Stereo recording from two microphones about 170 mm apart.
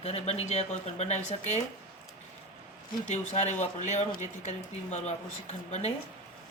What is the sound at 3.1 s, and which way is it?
Speech, 40° left (ahead or behind).